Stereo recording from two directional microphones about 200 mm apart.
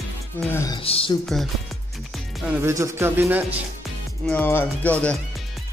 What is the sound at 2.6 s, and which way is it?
Speech, 15° right (ahead or behind).